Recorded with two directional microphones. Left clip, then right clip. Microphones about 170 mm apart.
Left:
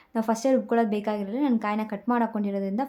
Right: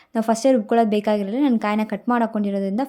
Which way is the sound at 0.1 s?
25° right (ahead or behind).